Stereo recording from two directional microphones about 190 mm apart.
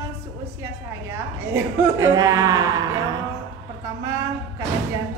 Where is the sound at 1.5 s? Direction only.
15° right (ahead or behind).